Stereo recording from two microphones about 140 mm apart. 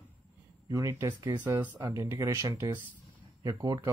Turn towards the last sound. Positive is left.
turn(degrees=-25)  # may be behind; listen again after turning